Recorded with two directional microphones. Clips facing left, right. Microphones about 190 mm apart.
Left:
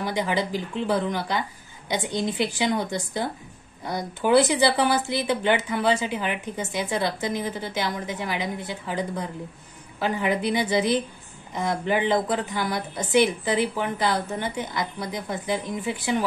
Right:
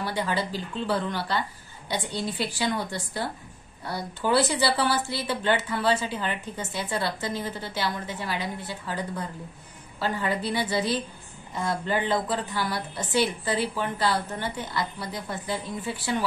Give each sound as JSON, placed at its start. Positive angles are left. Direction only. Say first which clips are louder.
{"t": 0.0, "sound": "a woman's voice", "louder": "left 3 dB", "side_deg": 15}